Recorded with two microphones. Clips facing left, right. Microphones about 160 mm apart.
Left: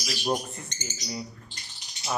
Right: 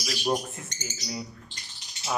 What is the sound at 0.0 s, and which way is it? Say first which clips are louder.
Speech: right 1 dB; centre (ahead or behind).